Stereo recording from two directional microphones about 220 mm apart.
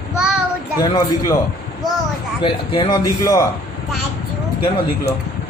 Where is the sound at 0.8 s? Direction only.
20° left (ahead or behind).